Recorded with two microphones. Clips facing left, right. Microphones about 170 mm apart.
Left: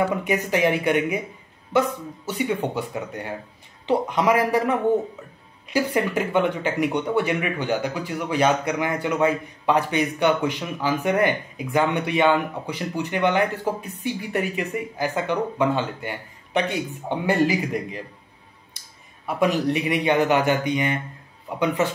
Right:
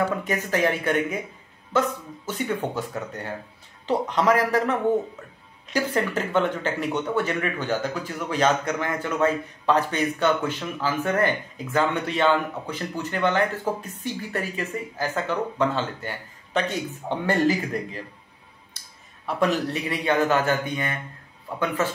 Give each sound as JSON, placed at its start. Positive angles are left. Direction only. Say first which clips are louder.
{"t": 0.1, "sound": "speech", "louder": "left 3 dB", "side_deg": 15}
{"t": 19.2, "sound": "speech", "louder": "left 2 dB", "side_deg": 15}